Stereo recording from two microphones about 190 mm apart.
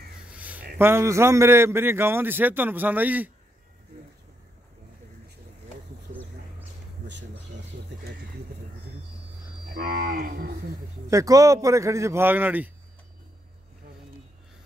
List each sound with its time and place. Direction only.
0.3 s a sound: 10° right (ahead or behind)
0.7 s a man's voice: 15° right (ahead or behind)
9.7 s moo: 50° right (ahead or behind)
11.1 s a man's voice: 15° right (ahead or behind)